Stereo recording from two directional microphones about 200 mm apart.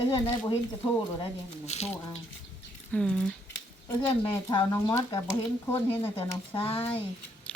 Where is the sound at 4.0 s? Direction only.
25° left (ahead or behind).